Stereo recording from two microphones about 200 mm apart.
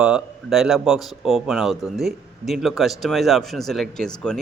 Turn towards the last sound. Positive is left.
turn(degrees=0)  # may be behind; listen again after turning